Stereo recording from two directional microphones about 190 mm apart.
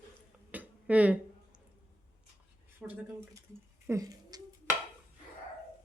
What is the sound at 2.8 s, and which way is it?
Speech, 5° right (ahead or behind).